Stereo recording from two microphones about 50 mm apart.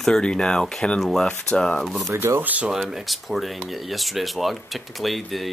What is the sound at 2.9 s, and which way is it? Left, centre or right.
Speech, centre.